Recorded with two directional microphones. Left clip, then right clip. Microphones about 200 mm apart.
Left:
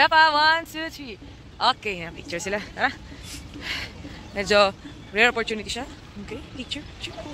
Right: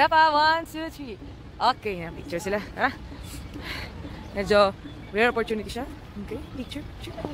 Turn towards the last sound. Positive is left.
turn(degrees=0)  # may be behind; listen again after turning